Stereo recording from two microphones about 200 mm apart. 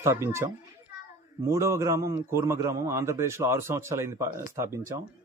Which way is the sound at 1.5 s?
15° right (ahead or behind).